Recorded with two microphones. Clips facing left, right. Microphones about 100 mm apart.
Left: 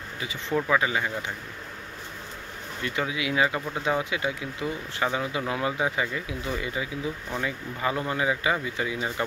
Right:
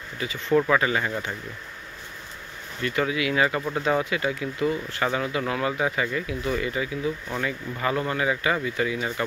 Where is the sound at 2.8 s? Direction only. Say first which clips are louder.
Right 4 dB; 15° left (ahead or behind).